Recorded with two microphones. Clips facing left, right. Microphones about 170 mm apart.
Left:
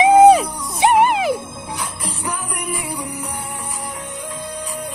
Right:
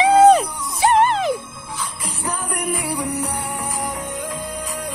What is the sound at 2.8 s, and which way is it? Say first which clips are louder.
Music: right 4 dB; 70° right (ahead or behind).